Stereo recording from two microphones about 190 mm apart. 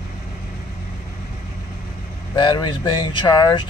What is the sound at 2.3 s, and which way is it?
Speech, 25° left (ahead or behind).